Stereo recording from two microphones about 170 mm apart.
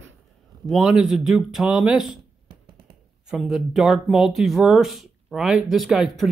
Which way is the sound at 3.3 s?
Centre (ahead or behind).